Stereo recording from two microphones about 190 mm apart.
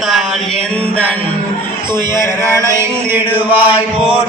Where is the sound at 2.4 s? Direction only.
15° right (ahead or behind).